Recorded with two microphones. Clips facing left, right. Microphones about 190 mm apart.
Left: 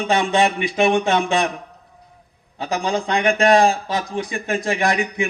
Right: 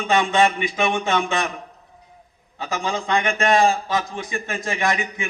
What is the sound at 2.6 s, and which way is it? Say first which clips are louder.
A man's voice: left 4 dB; 35° left (ahead or behind).